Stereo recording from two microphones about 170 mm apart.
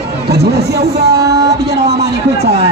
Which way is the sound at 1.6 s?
75° right (ahead or behind).